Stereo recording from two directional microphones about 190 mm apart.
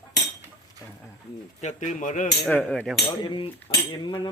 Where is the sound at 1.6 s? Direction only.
40° left (ahead or behind).